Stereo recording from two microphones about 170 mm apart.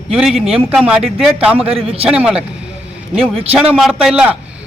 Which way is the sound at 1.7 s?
35° right (ahead or behind).